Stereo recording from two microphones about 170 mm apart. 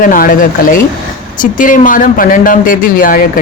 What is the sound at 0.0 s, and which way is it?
Speech, 55° left (ahead or behind).